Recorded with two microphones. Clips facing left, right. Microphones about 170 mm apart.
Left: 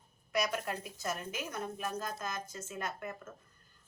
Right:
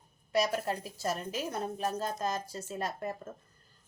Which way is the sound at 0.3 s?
30° right (ahead or behind).